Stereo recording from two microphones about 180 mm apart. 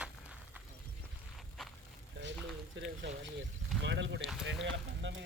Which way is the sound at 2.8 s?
75° right (ahead or behind).